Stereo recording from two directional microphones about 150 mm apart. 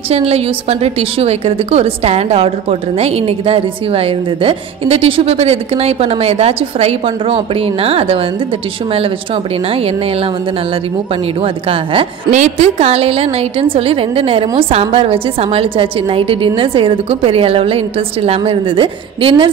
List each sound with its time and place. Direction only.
0.1 s a woman's voice: 45° right (ahead or behind)
11.4 s a woman's voice: 35° right (ahead or behind)
12.3 s a woman's voice: 50° right (ahead or behind); by 19.5 s 35° right (ahead or behind)